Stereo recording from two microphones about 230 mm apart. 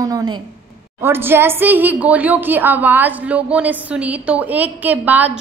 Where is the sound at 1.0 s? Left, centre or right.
Centre.